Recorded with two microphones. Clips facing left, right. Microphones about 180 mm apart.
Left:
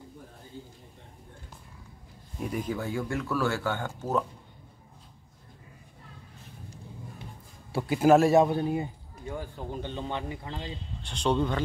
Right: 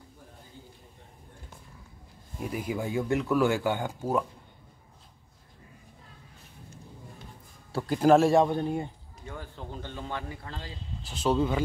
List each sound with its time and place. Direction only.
2.4 s speech: 5° right (ahead or behind)
7.7 s speech: 5° left (ahead or behind)
11.0 s speech: 5° right (ahead or behind)